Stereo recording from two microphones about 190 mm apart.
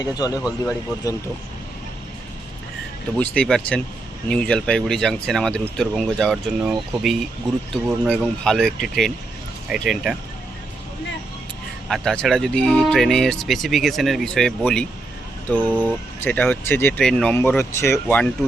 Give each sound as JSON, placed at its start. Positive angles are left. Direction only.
{"t": 0.0, "sound": "a man's voice", "side_deg": 20}
{"t": 3.2, "sound": "speech", "side_deg": 5}
{"t": 11.9, "sound": "speech", "side_deg": 0}